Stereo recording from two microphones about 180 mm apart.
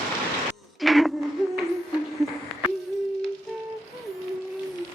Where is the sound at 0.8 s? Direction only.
Centre (ahead or behind).